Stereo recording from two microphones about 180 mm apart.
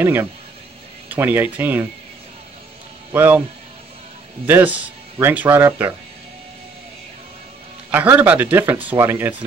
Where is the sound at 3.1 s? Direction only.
10° right (ahead or behind).